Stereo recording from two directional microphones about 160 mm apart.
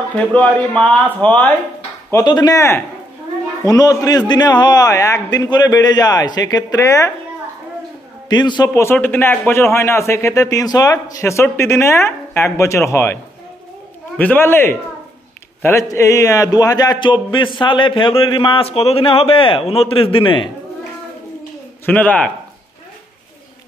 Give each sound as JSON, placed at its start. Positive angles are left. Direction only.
{"t": 0.1, "sound": "a man's voice", "side_deg": 10}
{"t": 2.2, "sound": "a man's voice", "side_deg": 25}
{"t": 8.3, "sound": "a man's voice", "side_deg": 25}
{"t": 8.6, "sound": "a man's voice", "side_deg": 15}
{"t": 21.8, "sound": "a man's voice", "side_deg": 10}